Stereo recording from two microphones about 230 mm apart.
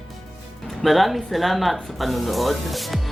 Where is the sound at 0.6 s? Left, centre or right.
Centre.